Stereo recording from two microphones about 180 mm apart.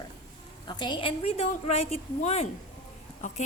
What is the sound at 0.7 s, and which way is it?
A woman's voice, 25° left (ahead or behind).